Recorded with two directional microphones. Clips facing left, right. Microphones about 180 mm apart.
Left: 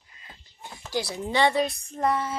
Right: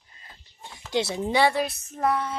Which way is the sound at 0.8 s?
25° right (ahead or behind).